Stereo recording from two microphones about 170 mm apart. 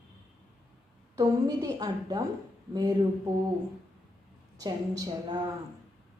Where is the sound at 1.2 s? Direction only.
20° right (ahead or behind).